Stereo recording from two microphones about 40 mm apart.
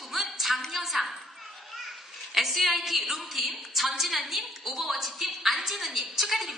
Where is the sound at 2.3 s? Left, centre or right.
Centre.